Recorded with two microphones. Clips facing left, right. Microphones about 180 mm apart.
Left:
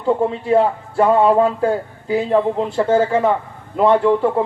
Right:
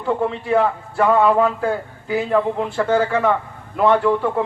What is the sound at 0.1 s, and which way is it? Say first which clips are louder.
A man's voice: left 3 dB; 30° left (ahead or behind).